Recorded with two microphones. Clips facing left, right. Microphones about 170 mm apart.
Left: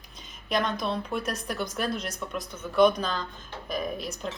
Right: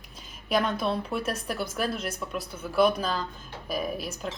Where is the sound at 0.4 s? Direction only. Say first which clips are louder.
Right 2 dB; 5° right (ahead or behind).